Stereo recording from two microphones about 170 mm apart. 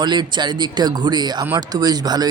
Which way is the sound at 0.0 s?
25° right (ahead or behind).